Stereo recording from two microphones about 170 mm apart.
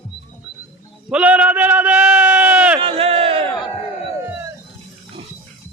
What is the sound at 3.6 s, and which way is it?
Crowd, 30° left (ahead or behind).